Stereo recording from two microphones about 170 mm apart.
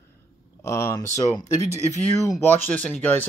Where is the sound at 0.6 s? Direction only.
15° left (ahead or behind).